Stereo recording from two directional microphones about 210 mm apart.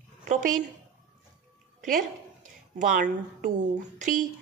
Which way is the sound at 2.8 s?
40° right (ahead or behind).